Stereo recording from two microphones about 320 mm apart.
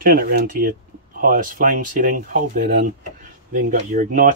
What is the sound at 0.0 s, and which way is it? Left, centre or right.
Speech, right.